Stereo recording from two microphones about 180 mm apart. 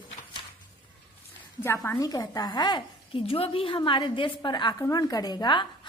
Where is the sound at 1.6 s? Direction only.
15° left (ahead or behind).